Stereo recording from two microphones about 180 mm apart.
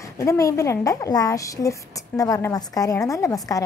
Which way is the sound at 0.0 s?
20° left (ahead or behind).